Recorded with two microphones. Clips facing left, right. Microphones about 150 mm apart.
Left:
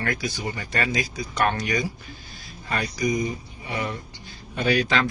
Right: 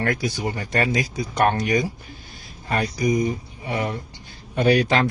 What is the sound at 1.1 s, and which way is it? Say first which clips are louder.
Speech: right 5 dB; 55° right (ahead or behind).